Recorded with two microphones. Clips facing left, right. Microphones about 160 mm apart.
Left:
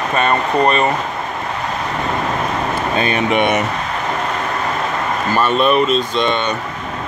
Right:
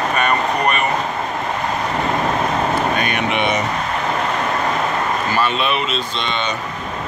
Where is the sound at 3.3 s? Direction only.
50° left (ahead or behind).